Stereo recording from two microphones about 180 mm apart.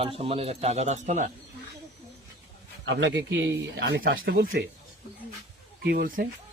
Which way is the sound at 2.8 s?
85° right.